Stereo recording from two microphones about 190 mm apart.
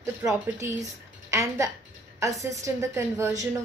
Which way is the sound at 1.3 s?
15° right (ahead or behind).